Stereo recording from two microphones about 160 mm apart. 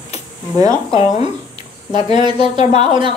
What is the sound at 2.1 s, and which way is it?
Speech, 30° right (ahead or behind).